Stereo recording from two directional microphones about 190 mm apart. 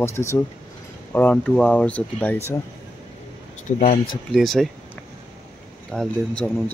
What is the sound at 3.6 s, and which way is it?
Speech, 35° left (ahead or behind).